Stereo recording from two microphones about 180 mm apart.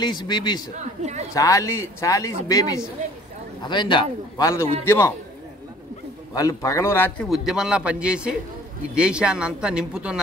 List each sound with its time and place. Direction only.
0.0 s a man's voice: 25° left (ahead or behind)
6.3 s speech: 20° left (ahead or behind)
7.2 s speech: centre (ahead or behind)